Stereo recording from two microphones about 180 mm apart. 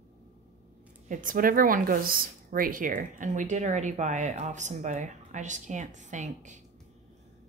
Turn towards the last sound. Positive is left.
turn(degrees=-40)  # may be behind; listen again after turning